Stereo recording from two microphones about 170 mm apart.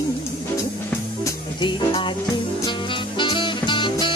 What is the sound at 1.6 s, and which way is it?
Music, 30° left (ahead or behind).